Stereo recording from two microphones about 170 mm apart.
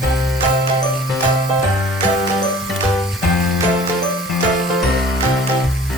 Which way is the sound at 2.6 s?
Centre (ahead or behind).